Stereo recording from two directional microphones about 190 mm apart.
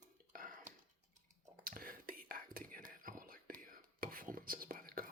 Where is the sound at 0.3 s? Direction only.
45° right (ahead or behind).